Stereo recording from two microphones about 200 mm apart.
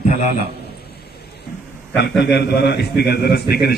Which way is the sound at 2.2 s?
55° left (ahead or behind).